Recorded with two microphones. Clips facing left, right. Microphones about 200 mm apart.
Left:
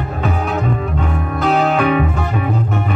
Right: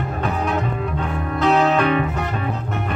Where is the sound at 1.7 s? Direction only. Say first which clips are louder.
Left 3 dB; 10° left (ahead or behind).